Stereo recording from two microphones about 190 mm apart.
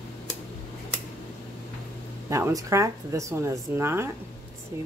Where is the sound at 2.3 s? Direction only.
15° right (ahead or behind).